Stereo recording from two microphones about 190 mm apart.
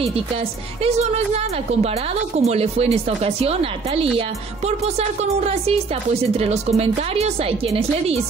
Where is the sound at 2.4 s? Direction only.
35° right (ahead or behind).